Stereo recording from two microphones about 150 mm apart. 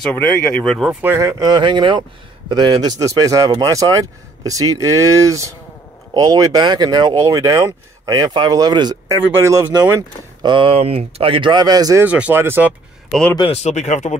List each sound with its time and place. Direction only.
0.1 s speech: 10° left (ahead or behind)
1.0 s speech: 20° right (ahead or behind)
10.5 s speech: 35° right (ahead or behind)
12.0 s speech: 10° right (ahead or behind)
13.1 s speech: 5° left (ahead or behind)
13.4 s speech: 45° left (ahead or behind)